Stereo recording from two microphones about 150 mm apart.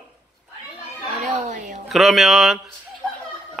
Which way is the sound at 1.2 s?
55° right (ahead or behind).